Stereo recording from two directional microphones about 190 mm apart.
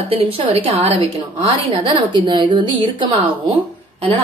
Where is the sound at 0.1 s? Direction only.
30° right (ahead or behind).